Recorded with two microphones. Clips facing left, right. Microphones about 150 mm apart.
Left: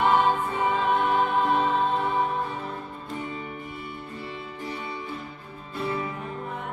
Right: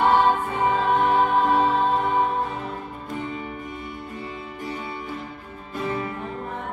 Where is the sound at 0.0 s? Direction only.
35° right (ahead or behind).